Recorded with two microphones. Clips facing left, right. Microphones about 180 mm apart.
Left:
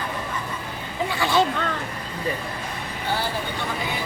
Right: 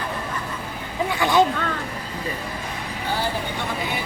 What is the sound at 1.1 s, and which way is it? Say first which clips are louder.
Speech: right 3 dB; 15° right (ahead or behind).